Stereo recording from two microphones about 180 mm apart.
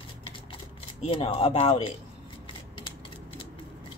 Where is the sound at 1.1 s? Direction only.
30° left (ahead or behind).